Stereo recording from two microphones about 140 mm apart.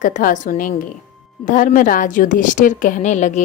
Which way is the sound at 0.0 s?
70° left (ahead or behind).